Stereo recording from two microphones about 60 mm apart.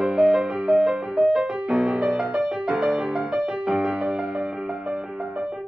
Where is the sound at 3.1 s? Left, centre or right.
Centre.